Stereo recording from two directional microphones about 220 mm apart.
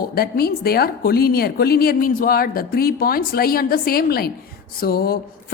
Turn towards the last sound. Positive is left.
turn(degrees=45)  # may be behind; listen again after turning